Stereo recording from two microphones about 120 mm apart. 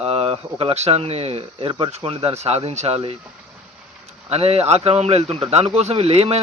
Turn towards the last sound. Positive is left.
turn(degrees=-60)  # may be behind; listen again after turning